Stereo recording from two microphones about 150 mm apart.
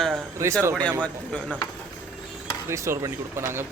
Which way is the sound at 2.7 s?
20° right (ahead or behind).